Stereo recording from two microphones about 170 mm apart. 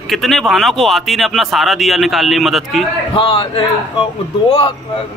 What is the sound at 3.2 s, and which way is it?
Speech, 30° left (ahead or behind).